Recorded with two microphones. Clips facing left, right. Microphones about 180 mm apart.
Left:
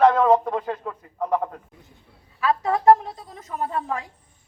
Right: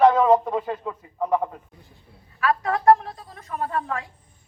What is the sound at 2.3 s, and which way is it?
A woman's voice, 20° left (ahead or behind).